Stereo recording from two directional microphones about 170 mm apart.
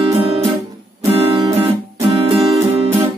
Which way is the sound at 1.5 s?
35° right (ahead or behind).